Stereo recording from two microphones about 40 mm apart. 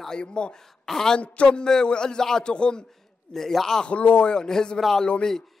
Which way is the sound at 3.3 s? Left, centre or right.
Centre.